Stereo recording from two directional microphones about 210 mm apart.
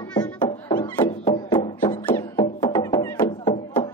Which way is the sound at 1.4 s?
25° left (ahead or behind).